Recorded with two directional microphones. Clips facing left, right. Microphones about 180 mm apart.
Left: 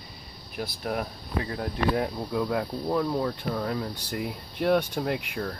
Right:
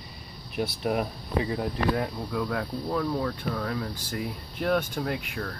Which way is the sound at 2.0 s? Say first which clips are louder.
Left 2 dB; 15° left (ahead or behind).